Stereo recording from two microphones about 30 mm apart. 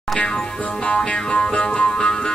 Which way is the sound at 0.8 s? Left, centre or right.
Left.